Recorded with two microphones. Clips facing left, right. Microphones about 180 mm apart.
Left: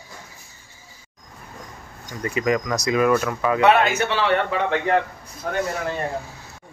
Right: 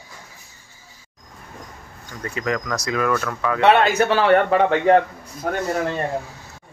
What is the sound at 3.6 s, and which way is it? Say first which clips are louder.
A man's voice: right 3 dB; 35° right (ahead or behind).